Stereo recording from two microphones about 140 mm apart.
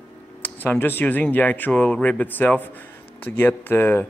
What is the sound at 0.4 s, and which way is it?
Speech, 15° left (ahead or behind).